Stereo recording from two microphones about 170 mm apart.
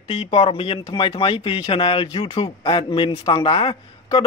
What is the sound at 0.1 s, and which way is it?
Speech, 35° left (ahead or behind).